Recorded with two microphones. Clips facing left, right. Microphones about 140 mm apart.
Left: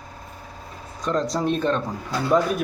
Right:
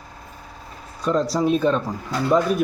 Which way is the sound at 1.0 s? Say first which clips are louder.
Right 3 dB; 5° right (ahead or behind).